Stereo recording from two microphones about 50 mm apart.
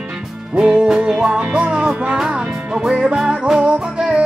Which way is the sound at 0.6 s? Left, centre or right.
Centre.